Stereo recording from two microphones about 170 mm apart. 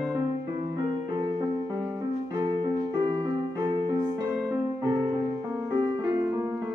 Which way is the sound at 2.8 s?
30° right (ahead or behind).